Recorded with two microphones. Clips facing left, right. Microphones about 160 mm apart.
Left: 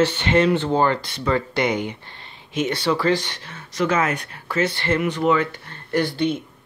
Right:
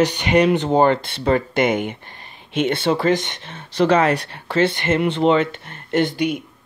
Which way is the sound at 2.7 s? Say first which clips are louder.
Right 1 dB; 20° right (ahead or behind).